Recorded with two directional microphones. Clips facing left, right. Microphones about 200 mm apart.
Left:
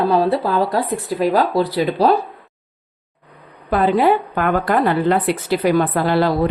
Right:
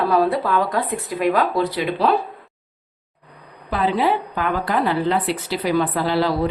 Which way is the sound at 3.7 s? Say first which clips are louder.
Left 5 dB; 50° left (ahead or behind).